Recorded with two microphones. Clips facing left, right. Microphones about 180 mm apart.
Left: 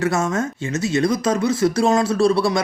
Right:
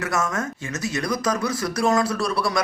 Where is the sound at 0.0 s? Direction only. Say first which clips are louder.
Left 5 dB; 25° left (ahead or behind).